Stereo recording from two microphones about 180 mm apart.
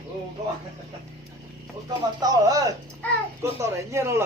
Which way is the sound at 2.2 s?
20° right (ahead or behind).